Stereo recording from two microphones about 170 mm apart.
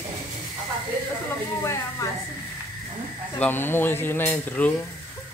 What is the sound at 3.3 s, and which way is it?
Speech, 10° left (ahead or behind).